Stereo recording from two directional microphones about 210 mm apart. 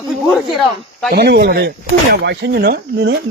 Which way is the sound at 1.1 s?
50° right (ahead or behind).